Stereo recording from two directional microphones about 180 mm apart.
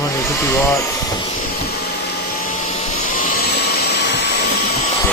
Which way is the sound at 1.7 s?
60° left (ahead or behind).